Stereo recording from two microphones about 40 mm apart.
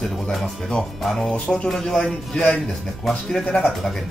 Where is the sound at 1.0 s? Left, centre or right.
Centre.